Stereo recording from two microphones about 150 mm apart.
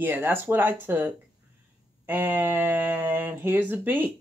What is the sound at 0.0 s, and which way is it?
Speech, 15° right (ahead or behind).